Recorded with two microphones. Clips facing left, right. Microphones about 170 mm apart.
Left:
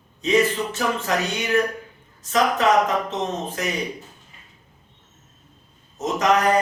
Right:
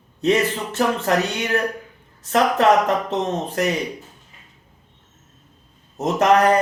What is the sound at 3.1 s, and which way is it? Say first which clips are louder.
Speech: right 3 dB; 60° right (ahead or behind).